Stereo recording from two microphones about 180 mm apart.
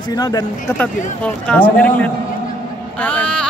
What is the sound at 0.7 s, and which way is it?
Speech, 5° left (ahead or behind).